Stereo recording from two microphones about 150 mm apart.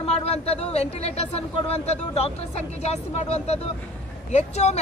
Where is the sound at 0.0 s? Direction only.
45° left (ahead or behind).